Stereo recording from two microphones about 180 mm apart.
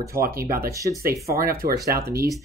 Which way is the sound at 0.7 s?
15° right (ahead or behind).